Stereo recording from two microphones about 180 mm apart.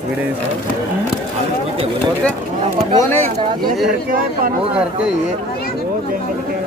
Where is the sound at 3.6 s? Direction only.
55° right (ahead or behind).